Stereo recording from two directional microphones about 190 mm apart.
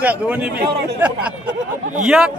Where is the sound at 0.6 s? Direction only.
60° right (ahead or behind).